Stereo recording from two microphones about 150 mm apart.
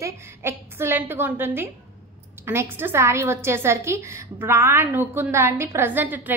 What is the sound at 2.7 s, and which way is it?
A woman's voice, 15° right (ahead or behind).